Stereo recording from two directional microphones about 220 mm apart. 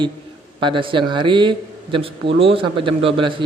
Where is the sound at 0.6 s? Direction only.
20° right (ahead or behind).